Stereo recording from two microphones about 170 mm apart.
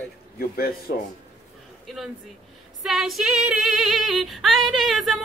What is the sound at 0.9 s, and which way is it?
Speech, 65° left (ahead or behind).